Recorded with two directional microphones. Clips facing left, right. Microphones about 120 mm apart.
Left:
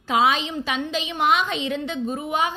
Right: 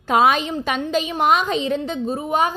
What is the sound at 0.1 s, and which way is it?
A woman's voice, 50° right (ahead or behind).